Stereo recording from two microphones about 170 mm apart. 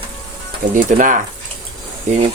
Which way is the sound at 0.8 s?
50° right (ahead or behind).